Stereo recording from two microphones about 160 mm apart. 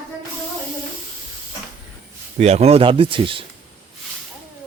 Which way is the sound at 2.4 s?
45° right (ahead or behind).